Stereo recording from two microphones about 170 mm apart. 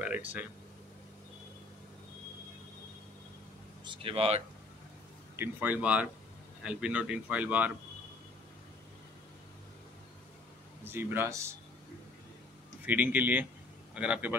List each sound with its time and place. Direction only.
0.0 s a sound: 10° right (ahead or behind)
3.8 s speech: 30° right (ahead or behind)
5.3 s speech: 10° right (ahead or behind)
10.9 s speech: 15° right (ahead or behind)
12.8 s speech: 10° right (ahead or behind)